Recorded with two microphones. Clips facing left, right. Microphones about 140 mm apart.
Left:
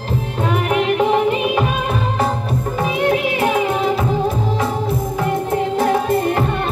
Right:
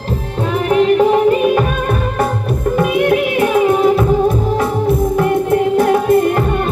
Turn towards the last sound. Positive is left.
turn(degrees=-50)  # may be behind; listen again after turning